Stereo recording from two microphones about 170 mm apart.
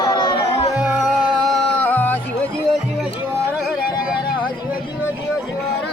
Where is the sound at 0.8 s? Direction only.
5° right (ahead or behind).